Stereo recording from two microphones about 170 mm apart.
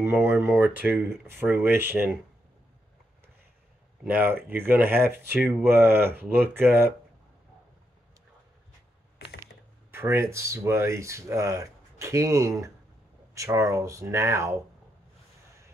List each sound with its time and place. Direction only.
0.0 s speech: 15° right (ahead or behind)
4.0 s speech: 10° right (ahead or behind)
9.8 s speech: 15° right (ahead or behind)